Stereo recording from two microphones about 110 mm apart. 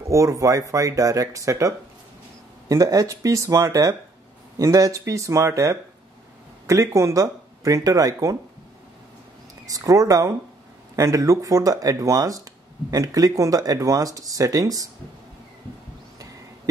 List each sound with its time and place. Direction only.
0.1 s speech: 30° right (ahead or behind)
2.7 s speech: 30° right (ahead or behind)
9.7 s speech: 35° right (ahead or behind)